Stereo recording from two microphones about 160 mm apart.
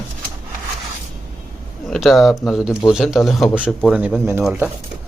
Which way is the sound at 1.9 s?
Centre (ahead or behind).